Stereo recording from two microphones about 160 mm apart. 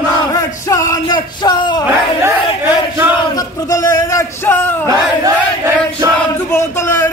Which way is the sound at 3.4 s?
20° left (ahead or behind).